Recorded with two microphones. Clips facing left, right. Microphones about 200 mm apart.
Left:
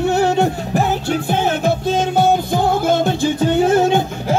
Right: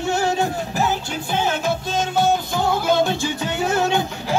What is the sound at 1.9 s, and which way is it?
Music, 55° left (ahead or behind).